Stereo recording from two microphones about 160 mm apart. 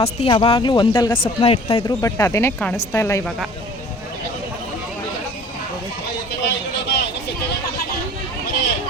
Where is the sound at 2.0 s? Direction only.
20° left (ahead or behind).